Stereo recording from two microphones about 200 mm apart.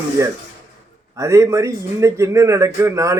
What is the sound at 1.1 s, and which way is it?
A man's voice, 15° right (ahead or behind).